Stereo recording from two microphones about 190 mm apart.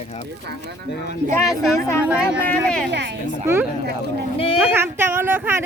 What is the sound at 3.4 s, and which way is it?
Speech, 15° right (ahead or behind).